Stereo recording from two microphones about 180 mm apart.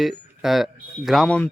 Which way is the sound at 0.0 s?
Centre (ahead or behind).